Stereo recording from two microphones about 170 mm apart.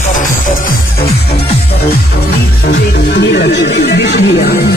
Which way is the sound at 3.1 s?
85° left.